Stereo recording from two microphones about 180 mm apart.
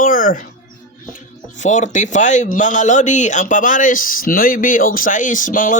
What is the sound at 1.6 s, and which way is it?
A man's voice, 45° left (ahead or behind).